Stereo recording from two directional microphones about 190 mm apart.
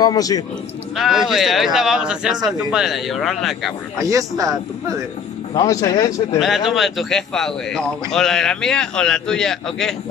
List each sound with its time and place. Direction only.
0.0 s speech: 20° left (ahead or behind)
0.9 s a man's voice: centre (ahead or behind)
4.0 s a man's voice: 15° right (ahead or behind)
5.5 s speech: 20° left (ahead or behind)
6.7 s a man's voice: centre (ahead or behind)